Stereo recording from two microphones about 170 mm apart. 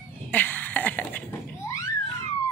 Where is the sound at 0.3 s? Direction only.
10° left (ahead or behind).